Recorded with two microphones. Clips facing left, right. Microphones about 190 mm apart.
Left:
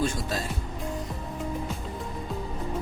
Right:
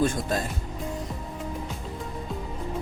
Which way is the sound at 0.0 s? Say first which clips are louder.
Right 3 dB; 50° right (ahead or behind).